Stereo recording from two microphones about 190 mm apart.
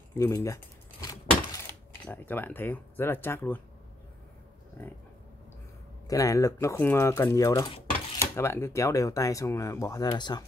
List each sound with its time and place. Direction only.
0.1 s speech: 15° left (ahead or behind)
1.0 s keys jangling: 15° left (ahead or behind)
6.0 s speech: 20° left (ahead or behind)